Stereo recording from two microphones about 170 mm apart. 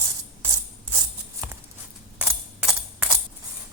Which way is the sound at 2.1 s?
5° right (ahead or behind).